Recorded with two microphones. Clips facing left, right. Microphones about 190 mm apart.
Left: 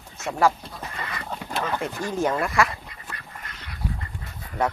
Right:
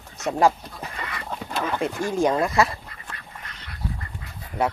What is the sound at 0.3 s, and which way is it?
Speech, 20° right (ahead or behind).